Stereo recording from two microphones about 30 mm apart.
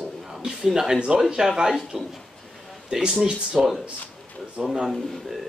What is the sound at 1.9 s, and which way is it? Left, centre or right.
Speech, centre.